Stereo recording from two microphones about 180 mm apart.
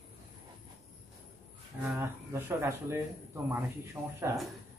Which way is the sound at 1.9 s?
15° right (ahead or behind).